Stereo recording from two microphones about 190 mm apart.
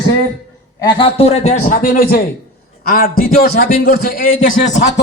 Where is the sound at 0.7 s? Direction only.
25° left (ahead or behind); by 4.6 s 45° left (ahead or behind).